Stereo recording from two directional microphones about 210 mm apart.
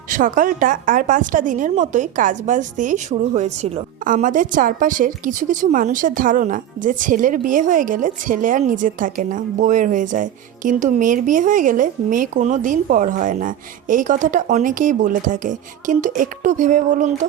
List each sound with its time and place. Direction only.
0.1 s a woman's voice: 40° right (ahead or behind)